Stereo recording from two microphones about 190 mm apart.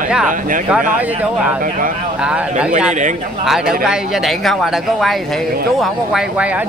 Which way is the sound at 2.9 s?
40° right (ahead or behind).